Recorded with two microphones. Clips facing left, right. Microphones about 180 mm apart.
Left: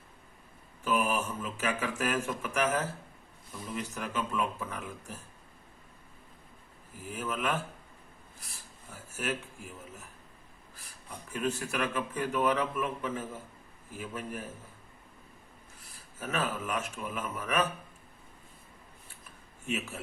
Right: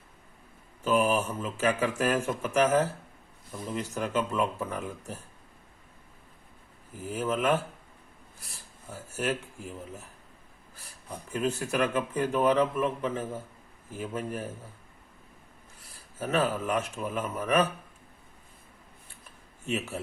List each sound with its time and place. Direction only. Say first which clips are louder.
0.9 s speech: right 5 dB; 30° right (ahead or behind)
7.1 s speech: right 6 dB; 30° right (ahead or behind)
11.1 s a man's voice: right 3 dB; 35° right (ahead or behind)
16.2 s speech: right 6 dB; 30° right (ahead or behind)
19.6 s speech: right 3 dB; 35° right (ahead or behind)